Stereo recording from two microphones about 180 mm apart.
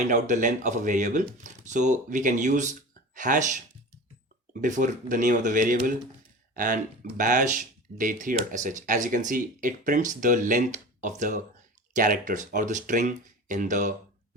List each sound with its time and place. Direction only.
0.1 s speech: 45° right (ahead or behind)
4.6 s speech: 45° right (ahead or behind)